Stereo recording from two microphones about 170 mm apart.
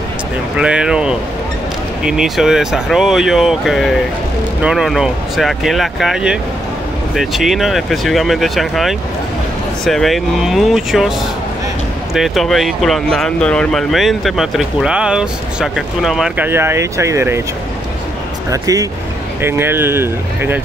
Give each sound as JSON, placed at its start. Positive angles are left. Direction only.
{"t": 0.6, "sound": "speech", "side_deg": -5}
{"t": 16.4, "sound": "speech", "side_deg": -15}
{"t": 18.5, "sound": "speech", "side_deg": -20}